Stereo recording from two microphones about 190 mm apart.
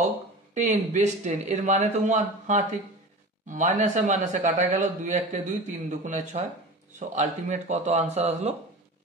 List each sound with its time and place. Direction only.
0.6 s speech: 40° right (ahead or behind)